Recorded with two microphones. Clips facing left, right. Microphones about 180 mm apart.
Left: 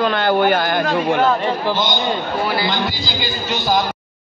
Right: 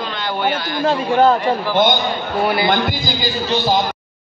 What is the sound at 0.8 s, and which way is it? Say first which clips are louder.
Speech: right 2 dB; 35° right (ahead or behind).